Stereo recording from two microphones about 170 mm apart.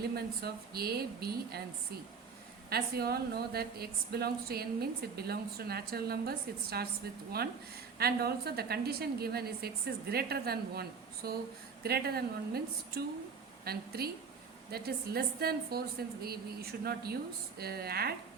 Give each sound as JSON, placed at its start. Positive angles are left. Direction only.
{"t": 0.2, "sound": "a woman's voice", "side_deg": -65}
{"t": 2.6, "sound": "a woman's voice", "side_deg": -65}